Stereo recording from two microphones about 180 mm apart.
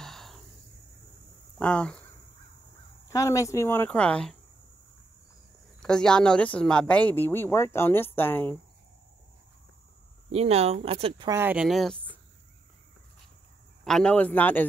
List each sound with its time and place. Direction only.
0.0 s a sound: centre (ahead or behind)
1.6 s speech: 5° left (ahead or behind)
3.1 s speech: 15° left (ahead or behind)
5.8 s speech: 5° left (ahead or behind)
10.3 s speech: 35° right (ahead or behind)
11.2 s speech: 10° right (ahead or behind)
13.8 s speech: 5° left (ahead or behind)